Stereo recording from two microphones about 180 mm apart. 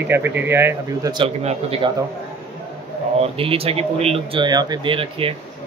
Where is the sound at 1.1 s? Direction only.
35° right (ahead or behind).